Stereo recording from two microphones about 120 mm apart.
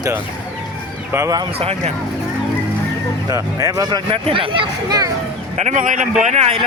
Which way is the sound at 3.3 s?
25° right (ahead or behind).